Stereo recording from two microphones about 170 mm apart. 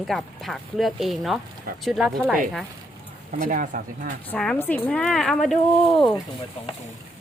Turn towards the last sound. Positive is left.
turn(degrees=0)  # may be behind; listen again after turning